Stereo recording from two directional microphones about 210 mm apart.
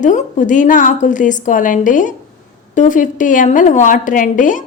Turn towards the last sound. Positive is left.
turn(degrees=40)  # may be behind; listen again after turning